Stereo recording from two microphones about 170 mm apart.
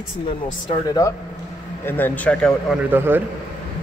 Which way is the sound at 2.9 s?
10° right (ahead or behind).